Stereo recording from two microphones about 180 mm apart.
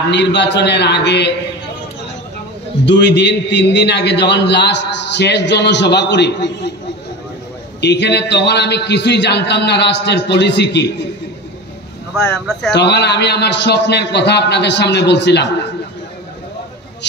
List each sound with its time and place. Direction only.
0.1 s a man's voice: 70° left (ahead or behind)
2.8 s a man's voice: 70° left (ahead or behind)
7.8 s a man's voice: 70° left (ahead or behind)
12.2 s speech: 5° left (ahead or behind)
12.7 s a man's voice: 70° left (ahead or behind)